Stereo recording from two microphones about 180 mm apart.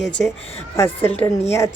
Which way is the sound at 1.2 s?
15° left (ahead or behind).